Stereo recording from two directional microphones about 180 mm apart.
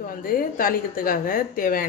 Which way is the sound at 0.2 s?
50° left (ahead or behind).